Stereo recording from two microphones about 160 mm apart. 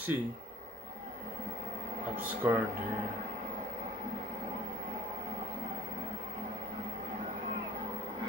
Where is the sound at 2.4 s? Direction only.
10° right (ahead or behind).